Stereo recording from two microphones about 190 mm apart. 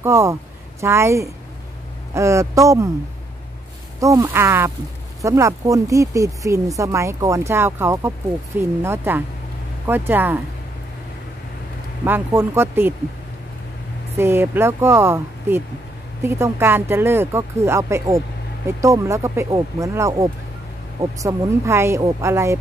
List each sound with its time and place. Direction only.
0.0 s speech: 15° right (ahead or behind)
4.0 s speech: 15° right (ahead or behind)
12.0 s speech: 10° right (ahead or behind)
14.1 s speech: 10° right (ahead or behind)